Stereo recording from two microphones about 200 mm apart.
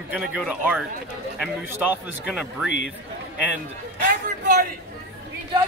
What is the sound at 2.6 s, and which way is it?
Speech, 65° left (ahead or behind).